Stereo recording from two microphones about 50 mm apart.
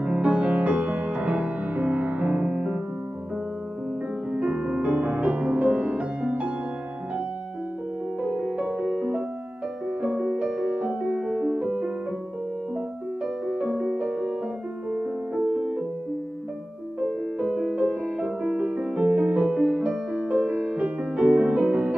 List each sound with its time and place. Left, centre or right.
0.0 s music: centre
4.3 s music: right
8.2 s music: centre
13.5 s music: right
17.4 s music: centre